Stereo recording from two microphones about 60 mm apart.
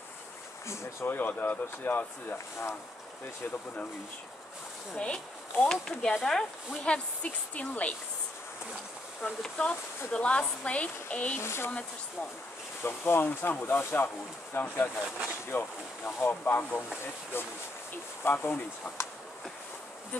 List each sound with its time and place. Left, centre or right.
1.0 s speech: left
4.9 s speech: centre
6.8 s speech: centre
9.4 s speech: centre
11.3 s speech: left
12.8 s speech: left